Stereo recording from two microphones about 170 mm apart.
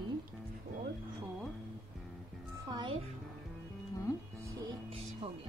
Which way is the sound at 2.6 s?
25° right (ahead or behind).